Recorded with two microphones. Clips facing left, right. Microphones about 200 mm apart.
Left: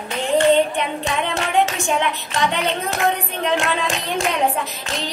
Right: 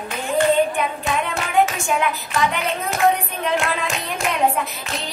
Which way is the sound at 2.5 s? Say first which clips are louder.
Left 2 dB; 30° left (ahead or behind).